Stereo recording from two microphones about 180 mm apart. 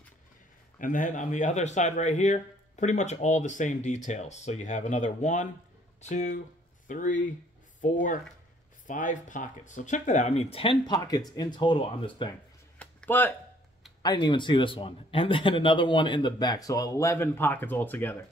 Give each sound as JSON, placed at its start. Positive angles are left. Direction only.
{"t": 0.7, "sound": "speech", "side_deg": 45}
{"t": 12.7, "sound": "a sound", "side_deg": 10}
{"t": 14.0, "sound": "a man's voice", "side_deg": 25}